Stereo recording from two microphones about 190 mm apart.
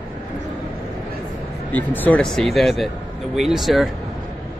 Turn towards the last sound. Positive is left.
turn(degrees=0)  # may be behind; listen again after turning